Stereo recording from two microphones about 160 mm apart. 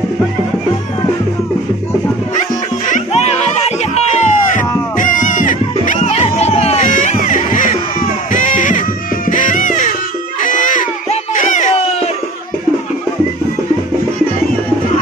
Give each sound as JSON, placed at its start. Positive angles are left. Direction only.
{"t": 2.9, "sound": "music", "side_deg": 45}
{"t": 6.2, "sound": "music", "side_deg": 40}
{"t": 10.4, "sound": "a sound", "side_deg": 55}